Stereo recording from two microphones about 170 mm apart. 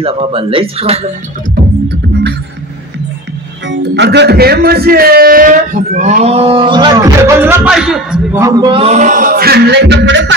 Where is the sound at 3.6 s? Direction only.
90° right; by 8.4 s 5° right (ahead or behind).